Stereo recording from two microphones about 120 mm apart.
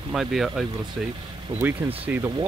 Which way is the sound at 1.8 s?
20° right (ahead or behind).